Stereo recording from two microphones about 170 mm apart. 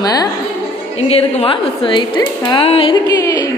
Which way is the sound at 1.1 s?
35° left (ahead or behind).